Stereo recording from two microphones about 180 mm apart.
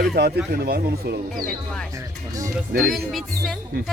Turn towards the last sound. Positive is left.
turn(degrees=0)  # may be behind; listen again after turning